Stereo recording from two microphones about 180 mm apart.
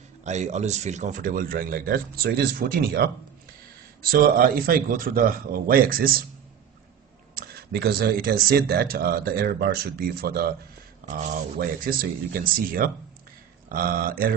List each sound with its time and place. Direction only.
0.2 s speech: 40° right (ahead or behind); by 3.1 s 60° right (ahead or behind)
4.1 s speech: 55° right (ahead or behind)
7.3 s speech: 60° right (ahead or behind)
11.1 s speech: 45° right (ahead or behind)